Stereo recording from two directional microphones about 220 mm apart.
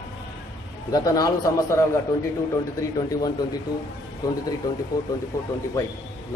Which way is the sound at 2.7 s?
15° left (ahead or behind).